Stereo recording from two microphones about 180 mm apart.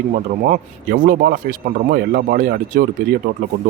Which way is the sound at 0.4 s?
45° right (ahead or behind).